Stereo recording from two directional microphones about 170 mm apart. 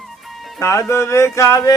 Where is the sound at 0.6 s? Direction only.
15° left (ahead or behind).